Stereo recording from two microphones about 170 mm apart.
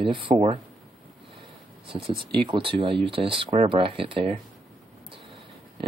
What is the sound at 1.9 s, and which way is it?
Speech, 30° right (ahead or behind).